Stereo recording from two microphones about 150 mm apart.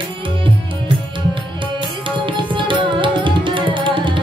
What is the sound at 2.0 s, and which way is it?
Tabla, 35° right (ahead or behind).